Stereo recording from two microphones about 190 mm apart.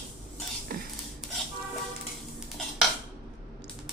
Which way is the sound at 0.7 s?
50° right (ahead or behind).